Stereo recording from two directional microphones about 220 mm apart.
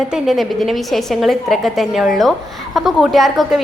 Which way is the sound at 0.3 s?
Centre (ahead or behind).